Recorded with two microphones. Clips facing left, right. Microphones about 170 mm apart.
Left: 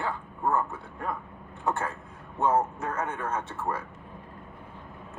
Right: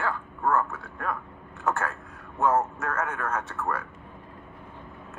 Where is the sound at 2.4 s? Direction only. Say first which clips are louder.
Right 1 dB; 25° left (ahead or behind).